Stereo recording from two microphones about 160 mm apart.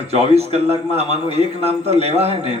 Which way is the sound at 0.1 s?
40° right (ahead or behind).